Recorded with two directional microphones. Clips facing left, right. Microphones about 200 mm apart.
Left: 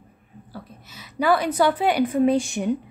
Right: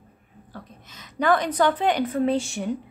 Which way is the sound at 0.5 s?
10° left (ahead or behind).